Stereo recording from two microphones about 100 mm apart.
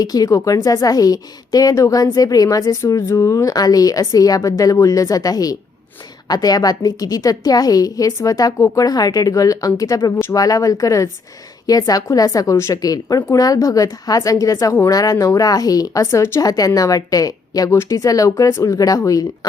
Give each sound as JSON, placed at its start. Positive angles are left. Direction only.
{"t": 0.0, "sound": "a woman's voice", "side_deg": 40}